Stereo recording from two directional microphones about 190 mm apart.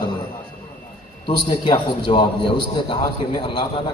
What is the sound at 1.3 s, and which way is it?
A man's voice, 25° left (ahead or behind).